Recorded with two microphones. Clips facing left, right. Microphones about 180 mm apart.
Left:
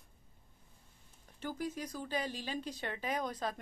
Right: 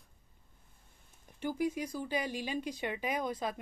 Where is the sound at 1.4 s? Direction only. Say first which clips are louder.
Right 6 dB; 10° right (ahead or behind).